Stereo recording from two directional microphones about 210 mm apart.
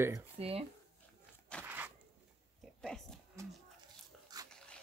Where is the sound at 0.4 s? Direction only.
30° right (ahead or behind).